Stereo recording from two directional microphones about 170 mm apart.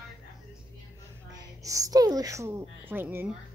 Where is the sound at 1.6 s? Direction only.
20° right (ahead or behind).